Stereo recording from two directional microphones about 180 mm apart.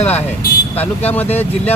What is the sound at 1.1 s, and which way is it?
Speech, 10° left (ahead or behind).